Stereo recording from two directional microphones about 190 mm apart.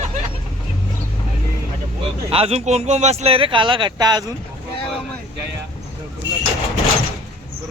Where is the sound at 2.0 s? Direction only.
30° right (ahead or behind).